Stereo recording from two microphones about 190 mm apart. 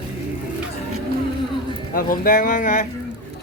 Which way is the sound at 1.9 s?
50° left (ahead or behind).